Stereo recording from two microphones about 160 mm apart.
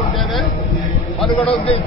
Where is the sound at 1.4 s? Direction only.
35° left (ahead or behind).